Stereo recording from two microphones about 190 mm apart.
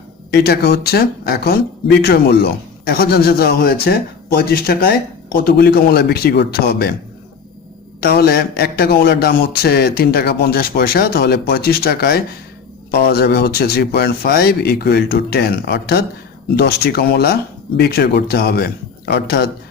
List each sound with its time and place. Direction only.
0.3 s a man's voice: 55° left (ahead or behind)
8.0 s a man's voice: 55° left (ahead or behind)